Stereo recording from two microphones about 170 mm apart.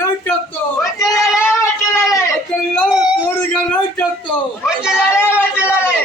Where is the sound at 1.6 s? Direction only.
15° left (ahead or behind).